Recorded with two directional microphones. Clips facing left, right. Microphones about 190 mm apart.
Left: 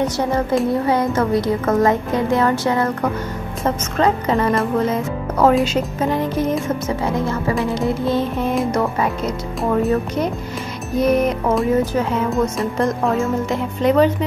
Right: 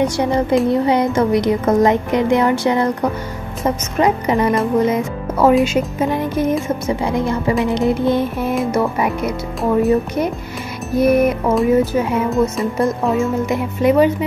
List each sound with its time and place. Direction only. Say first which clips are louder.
0.0 s music: right 3 dB; 15° right (ahead or behind)
4.7 s speech: right 3 dB; 15° right (ahead or behind)
5.7 s music: right 2 dB; 10° right (ahead or behind)